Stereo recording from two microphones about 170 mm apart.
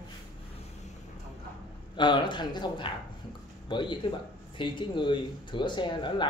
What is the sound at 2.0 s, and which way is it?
Speech, 25° left (ahead or behind).